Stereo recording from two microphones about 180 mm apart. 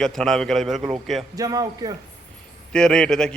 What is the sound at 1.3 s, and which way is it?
Speech, 20° right (ahead or behind).